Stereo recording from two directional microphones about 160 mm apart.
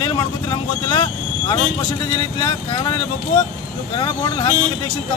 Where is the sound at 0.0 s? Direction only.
25° left (ahead or behind).